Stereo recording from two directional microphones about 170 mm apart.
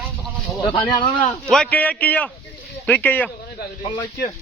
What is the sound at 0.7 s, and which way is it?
Speech, 30° left (ahead or behind).